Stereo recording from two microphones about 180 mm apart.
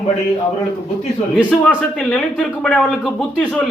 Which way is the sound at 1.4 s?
5° left (ahead or behind).